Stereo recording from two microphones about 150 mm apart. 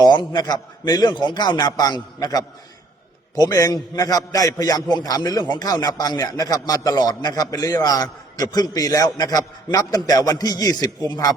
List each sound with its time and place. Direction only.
0.0 s speech: 30° left (ahead or behind)